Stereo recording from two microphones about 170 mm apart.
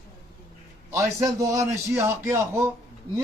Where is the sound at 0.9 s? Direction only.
20° right (ahead or behind).